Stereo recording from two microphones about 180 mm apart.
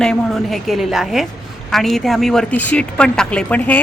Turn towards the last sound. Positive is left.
turn(degrees=10)  # may be behind; listen again after turning